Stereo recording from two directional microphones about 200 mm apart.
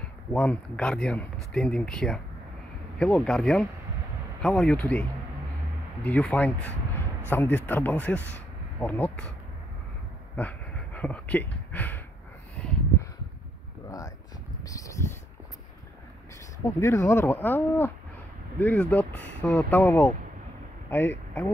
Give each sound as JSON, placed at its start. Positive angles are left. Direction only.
{"t": 0.3, "sound": "speech", "side_deg": 5}
{"t": 6.0, "sound": "speech", "side_deg": 10}
{"t": 10.3, "sound": "speech", "side_deg": 10}
{"t": 12.6, "sound": "a sound", "side_deg": 5}
{"t": 13.8, "sound": "a sound", "side_deg": 15}
{"t": 16.8, "sound": "speech", "side_deg": 15}